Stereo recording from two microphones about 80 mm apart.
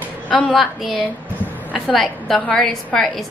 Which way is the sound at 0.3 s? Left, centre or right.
Centre.